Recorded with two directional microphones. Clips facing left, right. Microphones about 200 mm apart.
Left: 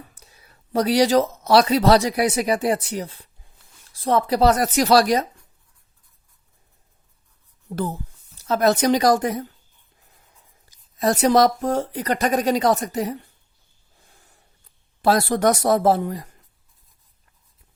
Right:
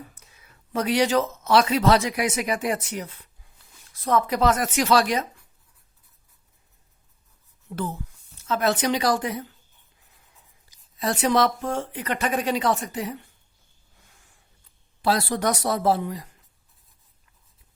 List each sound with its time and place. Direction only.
0.1 s speech: 35° left (ahead or behind)
7.7 s speech: 35° left (ahead or behind)
10.9 s speech: 45° left (ahead or behind)
14.0 s a sound: 35° left (ahead or behind)
15.0 s speech: 45° left (ahead or behind)